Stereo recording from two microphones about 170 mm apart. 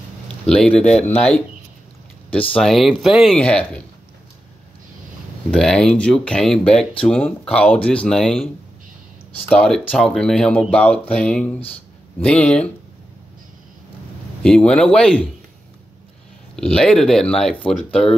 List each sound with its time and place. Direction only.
0.5 s speech: 5° left (ahead or behind)
5.5 s speech: 5° left (ahead or behind)
9.5 s speech: 5° left (ahead or behind)
14.4 s speech: 5° left (ahead or behind)
16.5 s speech: 5° left (ahead or behind)